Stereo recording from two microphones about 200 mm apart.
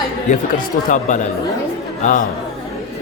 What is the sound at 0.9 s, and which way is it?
A man's voice, 40° left (ahead or behind).